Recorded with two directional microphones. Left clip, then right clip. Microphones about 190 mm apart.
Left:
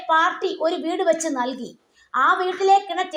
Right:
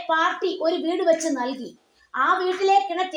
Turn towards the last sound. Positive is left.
turn(degrees=20)  # may be behind; listen again after turning